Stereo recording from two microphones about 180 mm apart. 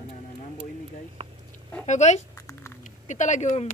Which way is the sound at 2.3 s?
15° left (ahead or behind).